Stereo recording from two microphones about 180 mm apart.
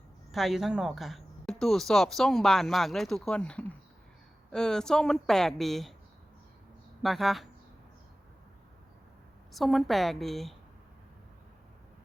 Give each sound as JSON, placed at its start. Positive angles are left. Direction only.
{"t": 0.3, "sound": "speech", "side_deg": 0}
{"t": 7.0, "sound": "speech", "side_deg": 0}
{"t": 9.5, "sound": "speech", "side_deg": 0}